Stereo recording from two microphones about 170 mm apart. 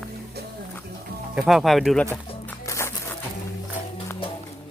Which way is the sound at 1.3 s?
Centre (ahead or behind).